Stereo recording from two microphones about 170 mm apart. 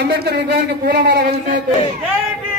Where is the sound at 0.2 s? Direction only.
70° right (ahead or behind).